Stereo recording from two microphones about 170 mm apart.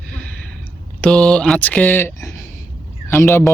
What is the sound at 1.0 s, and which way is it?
A man's voice, 5° left (ahead or behind).